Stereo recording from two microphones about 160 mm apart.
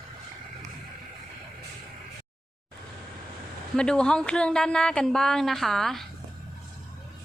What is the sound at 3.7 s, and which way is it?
Speech, 5° left (ahead or behind).